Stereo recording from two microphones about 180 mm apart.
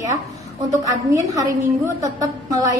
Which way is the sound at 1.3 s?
20° right (ahead or behind).